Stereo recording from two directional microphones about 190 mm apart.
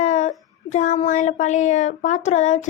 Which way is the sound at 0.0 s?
40° left (ahead or behind).